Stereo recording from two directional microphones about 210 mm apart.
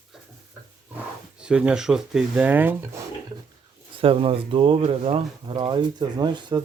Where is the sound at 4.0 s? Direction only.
25° right (ahead or behind).